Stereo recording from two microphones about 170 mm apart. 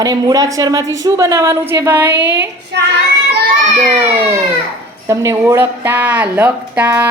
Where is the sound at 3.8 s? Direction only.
40° right (ahead or behind).